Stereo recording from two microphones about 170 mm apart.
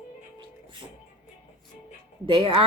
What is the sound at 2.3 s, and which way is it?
Speech, 30° right (ahead or behind).